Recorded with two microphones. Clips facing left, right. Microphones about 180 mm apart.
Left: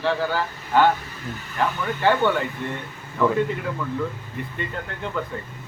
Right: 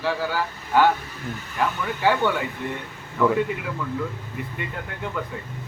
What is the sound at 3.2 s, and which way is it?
Speech, 10° right (ahead or behind).